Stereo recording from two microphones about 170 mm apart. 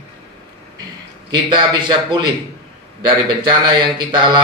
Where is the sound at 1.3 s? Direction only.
25° right (ahead or behind).